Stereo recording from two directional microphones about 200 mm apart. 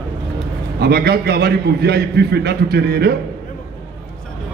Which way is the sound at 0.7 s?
55° right (ahead or behind).